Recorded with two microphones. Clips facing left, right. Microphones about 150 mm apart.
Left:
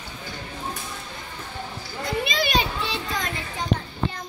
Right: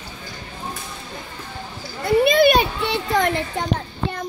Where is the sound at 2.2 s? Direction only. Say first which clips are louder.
Right 10 dB; 55° right (ahead or behind).